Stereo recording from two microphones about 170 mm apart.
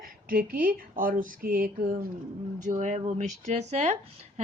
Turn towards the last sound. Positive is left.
turn(degrees=-40)  # may be behind; listen again after turning